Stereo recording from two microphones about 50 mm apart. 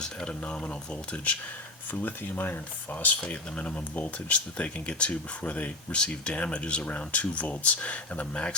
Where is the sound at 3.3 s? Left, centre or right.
Left.